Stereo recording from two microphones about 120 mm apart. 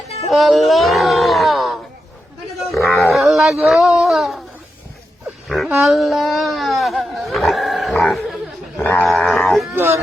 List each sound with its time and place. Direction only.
0.3 s groan: centre (ahead or behind)
2.7 s wild animals: centre (ahead or behind)
3.7 s a sound: 5° right (ahead or behind)
5.6 s a sound: 10° right (ahead or behind)
8.8 s dog: 10° left (ahead or behind)
9.0 s dog: centre (ahead or behind)
9.7 s speech: 20° right (ahead or behind)